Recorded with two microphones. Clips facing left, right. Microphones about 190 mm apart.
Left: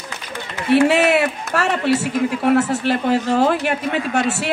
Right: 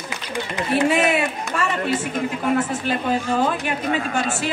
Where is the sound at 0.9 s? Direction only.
70° left (ahead or behind).